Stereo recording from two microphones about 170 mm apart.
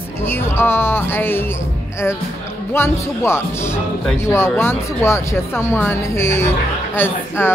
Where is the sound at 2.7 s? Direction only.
15° left (ahead or behind).